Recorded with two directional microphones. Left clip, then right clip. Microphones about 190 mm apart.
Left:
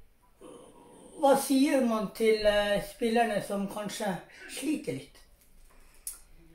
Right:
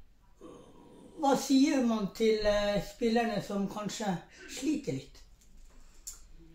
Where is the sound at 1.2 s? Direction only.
25° right (ahead or behind).